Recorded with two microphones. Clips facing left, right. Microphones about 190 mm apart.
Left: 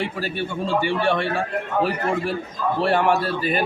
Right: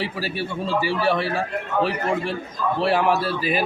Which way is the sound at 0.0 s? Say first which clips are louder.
Left 1 dB; 5° right (ahead or behind).